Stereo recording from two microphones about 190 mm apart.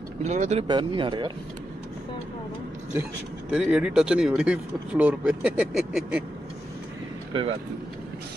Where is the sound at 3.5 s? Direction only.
5° right (ahead or behind).